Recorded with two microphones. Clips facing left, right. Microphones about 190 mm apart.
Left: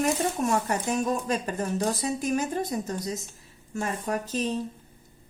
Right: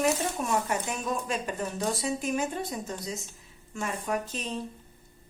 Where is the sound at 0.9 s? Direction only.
40° left (ahead or behind).